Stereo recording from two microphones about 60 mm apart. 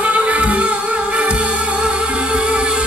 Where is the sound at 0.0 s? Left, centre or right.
Right.